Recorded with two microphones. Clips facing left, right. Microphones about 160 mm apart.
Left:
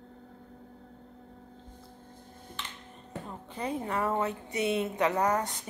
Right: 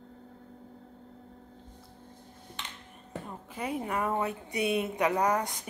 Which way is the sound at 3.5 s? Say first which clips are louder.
Even; 15° right (ahead or behind).